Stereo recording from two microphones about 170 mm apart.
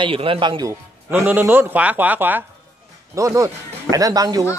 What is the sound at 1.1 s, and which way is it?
A man's voice, 10° right (ahead or behind).